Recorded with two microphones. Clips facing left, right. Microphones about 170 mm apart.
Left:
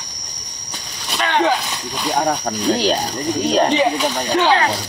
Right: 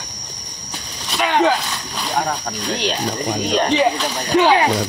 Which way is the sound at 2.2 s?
40° left (ahead or behind).